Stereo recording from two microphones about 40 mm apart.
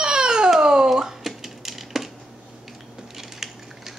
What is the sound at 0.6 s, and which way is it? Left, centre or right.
Speech, centre.